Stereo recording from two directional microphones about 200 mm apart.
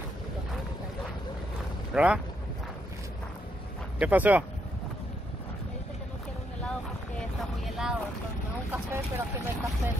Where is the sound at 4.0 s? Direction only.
10° right (ahead or behind).